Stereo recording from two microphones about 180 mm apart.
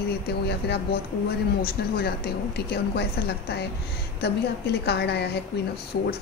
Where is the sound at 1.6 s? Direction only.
60° left (ahead or behind).